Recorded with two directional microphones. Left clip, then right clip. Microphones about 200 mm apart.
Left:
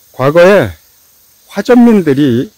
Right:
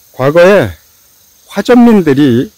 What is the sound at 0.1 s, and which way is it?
Cricket, centre (ahead or behind).